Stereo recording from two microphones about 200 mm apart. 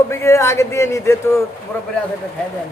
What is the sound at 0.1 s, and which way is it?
A man's voice, 15° left (ahead or behind).